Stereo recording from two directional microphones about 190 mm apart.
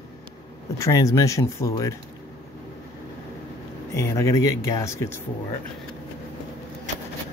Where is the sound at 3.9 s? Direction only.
15° left (ahead or behind).